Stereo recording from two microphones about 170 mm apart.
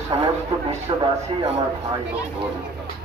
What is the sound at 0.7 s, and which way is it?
Speech, 30° right (ahead or behind).